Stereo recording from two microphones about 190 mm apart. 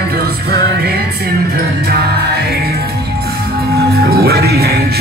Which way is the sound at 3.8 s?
55° right (ahead or behind).